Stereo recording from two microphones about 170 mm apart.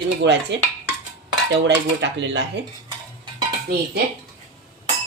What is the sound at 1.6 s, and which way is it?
Speech, 90° right.